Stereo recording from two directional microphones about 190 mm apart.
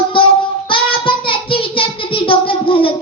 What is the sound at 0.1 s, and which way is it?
Child singing, 25° left (ahead or behind).